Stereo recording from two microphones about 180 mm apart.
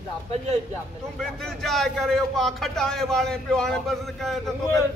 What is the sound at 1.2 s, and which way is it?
A man's voice, 5° left (ahead or behind).